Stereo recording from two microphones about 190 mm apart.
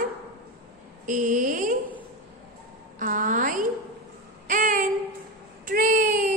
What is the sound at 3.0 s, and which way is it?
Speech, 45° right (ahead or behind).